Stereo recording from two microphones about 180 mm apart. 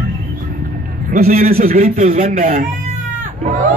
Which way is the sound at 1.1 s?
50° right (ahead or behind).